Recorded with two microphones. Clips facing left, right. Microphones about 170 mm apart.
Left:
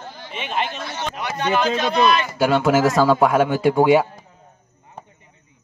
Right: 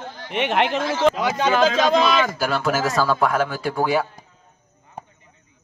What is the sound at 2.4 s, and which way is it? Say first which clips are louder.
Speech: left 5 dB; 20° left (ahead or behind).